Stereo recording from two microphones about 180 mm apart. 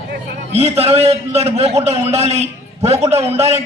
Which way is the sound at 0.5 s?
35° right (ahead or behind).